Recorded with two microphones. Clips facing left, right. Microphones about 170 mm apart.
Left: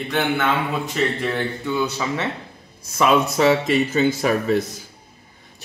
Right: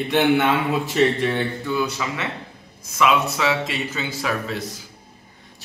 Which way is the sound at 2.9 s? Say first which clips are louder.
Left 2 dB; 40° left (ahead or behind).